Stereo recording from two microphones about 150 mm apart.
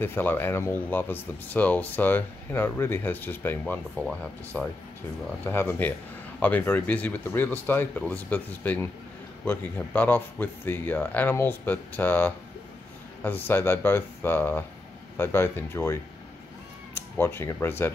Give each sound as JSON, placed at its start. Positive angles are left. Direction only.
{"t": 0.0, "sound": "speech", "side_deg": 15}